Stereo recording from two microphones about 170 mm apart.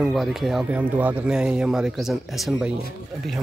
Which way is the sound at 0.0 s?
Centre (ahead or behind).